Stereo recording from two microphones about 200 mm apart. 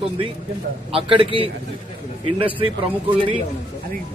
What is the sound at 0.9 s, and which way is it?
Speech, 25° right (ahead or behind).